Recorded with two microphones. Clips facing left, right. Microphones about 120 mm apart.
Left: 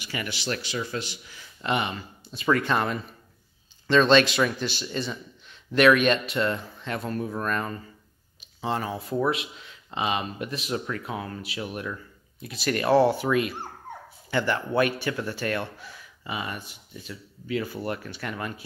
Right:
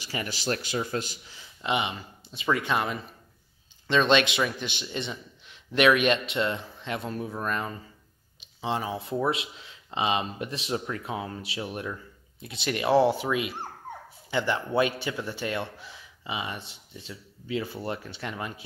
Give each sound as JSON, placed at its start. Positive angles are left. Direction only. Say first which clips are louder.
{"t": 0.0, "sound": "speech", "louder": "even", "side_deg": -35}
{"t": 1.3, "sound": "a sound", "louder": "left 1 dB", "side_deg": -15}
{"t": 2.3, "sound": "speech", "louder": "left 3 dB", "side_deg": -10}
{"t": 9.3, "sound": "speech", "louder": "left 1 dB", "side_deg": -30}